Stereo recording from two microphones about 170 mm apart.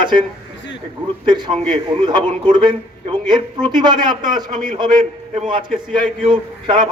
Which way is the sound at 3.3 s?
25° right (ahead or behind).